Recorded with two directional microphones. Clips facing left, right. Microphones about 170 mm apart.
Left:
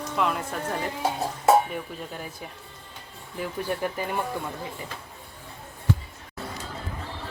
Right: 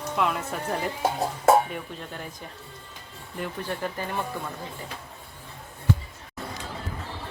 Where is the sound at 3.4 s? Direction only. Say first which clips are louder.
Left 2 dB; 10° left (ahead or behind).